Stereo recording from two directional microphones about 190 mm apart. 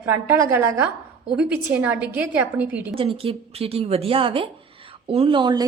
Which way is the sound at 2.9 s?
30° right (ahead or behind).